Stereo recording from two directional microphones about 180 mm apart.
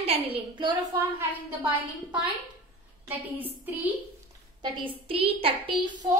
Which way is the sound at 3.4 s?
10° right (ahead or behind).